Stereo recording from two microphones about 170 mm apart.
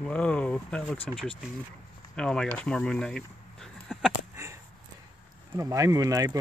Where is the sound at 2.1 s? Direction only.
5° left (ahead or behind).